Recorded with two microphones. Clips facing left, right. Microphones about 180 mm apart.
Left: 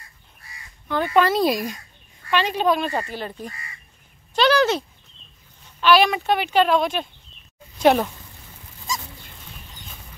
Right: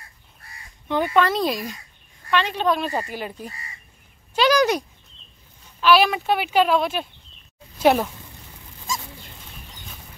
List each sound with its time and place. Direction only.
0.8 s speech: 15° right (ahead or behind)
1.1 s speech: 5° left (ahead or behind)
2.9 s speech: 10° right (ahead or behind)
5.8 s speech: centre (ahead or behind)